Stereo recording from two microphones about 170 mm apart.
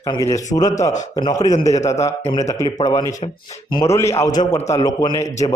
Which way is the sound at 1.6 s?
40° left (ahead or behind).